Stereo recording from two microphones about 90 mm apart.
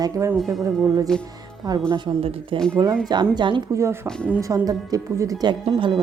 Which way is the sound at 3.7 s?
35° right (ahead or behind).